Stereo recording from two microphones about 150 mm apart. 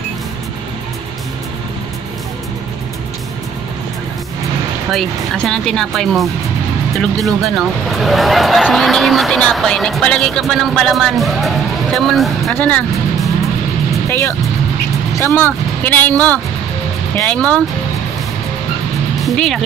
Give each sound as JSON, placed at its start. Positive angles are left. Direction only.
{"t": 4.9, "sound": "speech", "side_deg": 0}
{"t": 14.0, "sound": "speech", "side_deg": 15}
{"t": 19.2, "sound": "speech", "side_deg": 0}